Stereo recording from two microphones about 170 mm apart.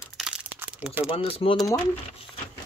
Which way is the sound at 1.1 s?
30° left (ahead or behind).